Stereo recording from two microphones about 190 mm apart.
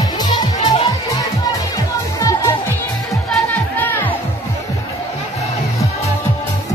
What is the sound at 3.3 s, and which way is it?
Music, 10° left (ahead or behind).